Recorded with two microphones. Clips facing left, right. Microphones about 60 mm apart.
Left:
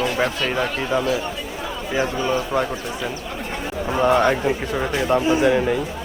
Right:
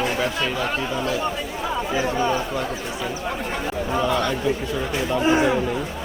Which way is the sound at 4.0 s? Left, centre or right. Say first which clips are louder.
Left 7 dB; left.